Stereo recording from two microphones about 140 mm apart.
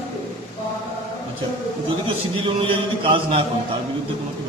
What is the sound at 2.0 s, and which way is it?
A man's voice, 40° right (ahead or behind).